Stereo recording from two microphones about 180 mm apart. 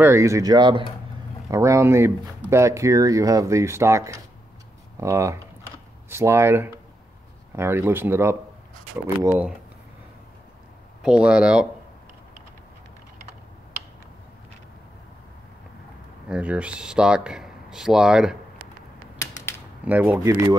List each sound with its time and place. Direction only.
0.0 s speech: 15° right (ahead or behind)
11.0 s speech: 5° right (ahead or behind)
16.3 s speech: 5° right (ahead or behind)
19.1 s typewriter: 15° left (ahead or behind)
19.8 s speech: 10° right (ahead or behind)